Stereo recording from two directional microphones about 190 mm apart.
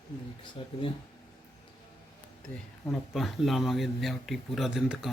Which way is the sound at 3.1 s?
Centre (ahead or behind).